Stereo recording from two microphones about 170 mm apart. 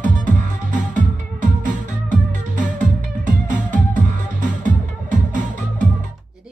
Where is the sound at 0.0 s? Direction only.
50° right (ahead or behind).